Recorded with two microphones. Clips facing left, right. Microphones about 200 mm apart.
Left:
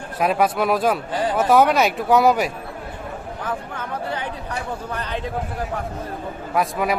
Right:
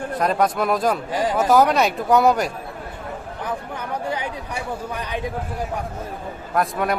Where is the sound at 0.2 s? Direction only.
5° left (ahead or behind).